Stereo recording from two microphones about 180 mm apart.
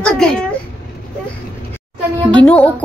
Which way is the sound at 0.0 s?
5° left (ahead or behind).